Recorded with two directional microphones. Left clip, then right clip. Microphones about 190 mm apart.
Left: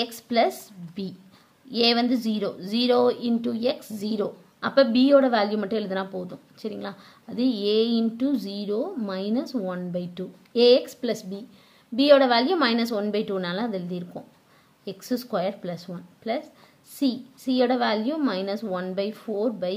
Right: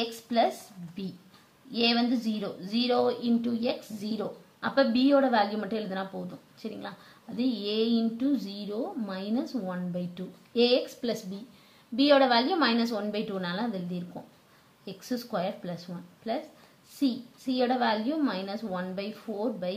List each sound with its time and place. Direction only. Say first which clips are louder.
0.0 s a woman's voice: left 4 dB; 50° left (ahead or behind)